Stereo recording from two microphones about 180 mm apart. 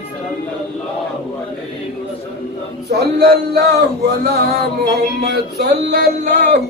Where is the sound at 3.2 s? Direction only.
60° right (ahead or behind).